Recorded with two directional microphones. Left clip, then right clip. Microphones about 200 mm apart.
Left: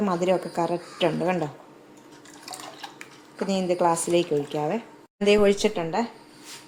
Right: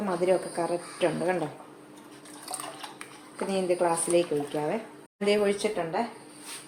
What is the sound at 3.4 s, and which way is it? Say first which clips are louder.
Speech: left 3 dB; 40° left (ahead or behind).